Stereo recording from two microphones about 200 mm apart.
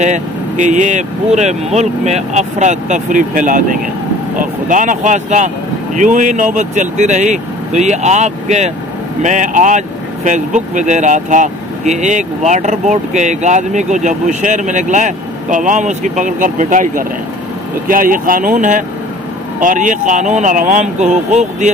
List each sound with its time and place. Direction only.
0.0 s speech: 35° right (ahead or behind)